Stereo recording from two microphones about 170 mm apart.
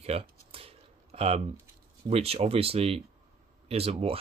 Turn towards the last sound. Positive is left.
turn(degrees=-35)  # may be behind; listen again after turning